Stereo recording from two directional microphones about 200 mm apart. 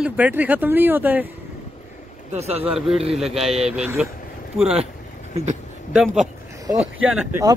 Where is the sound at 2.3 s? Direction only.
35° right (ahead or behind).